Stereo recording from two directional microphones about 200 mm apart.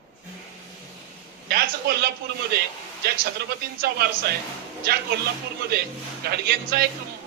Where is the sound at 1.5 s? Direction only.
50° right (ahead or behind).